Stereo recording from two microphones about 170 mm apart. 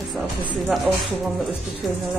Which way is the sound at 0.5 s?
5° right (ahead or behind).